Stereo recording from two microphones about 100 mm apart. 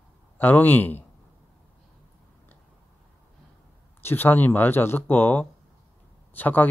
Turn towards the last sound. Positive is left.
turn(degrees=15)  # may be behind; listen again after turning